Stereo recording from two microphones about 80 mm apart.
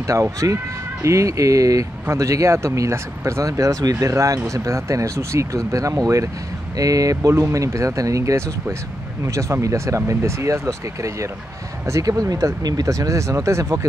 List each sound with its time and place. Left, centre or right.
0.0 s speech: right